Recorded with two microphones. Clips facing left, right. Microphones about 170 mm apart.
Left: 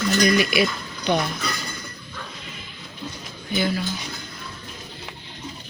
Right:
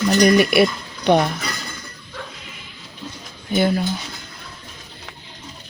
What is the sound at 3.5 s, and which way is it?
Speech, 50° right (ahead or behind).